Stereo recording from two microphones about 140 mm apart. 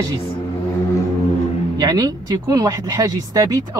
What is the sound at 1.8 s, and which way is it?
A woman's voice, 25° right (ahead or behind).